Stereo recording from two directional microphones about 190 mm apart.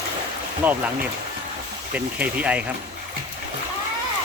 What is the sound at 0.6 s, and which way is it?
Speech, 10° right (ahead or behind).